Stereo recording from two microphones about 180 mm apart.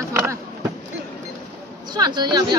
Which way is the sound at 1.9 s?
25° right (ahead or behind).